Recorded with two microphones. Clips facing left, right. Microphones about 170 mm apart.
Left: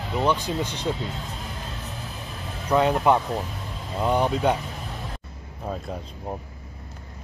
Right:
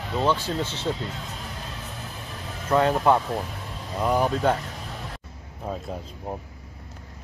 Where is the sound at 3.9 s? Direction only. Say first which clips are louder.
Even; centre (ahead or behind).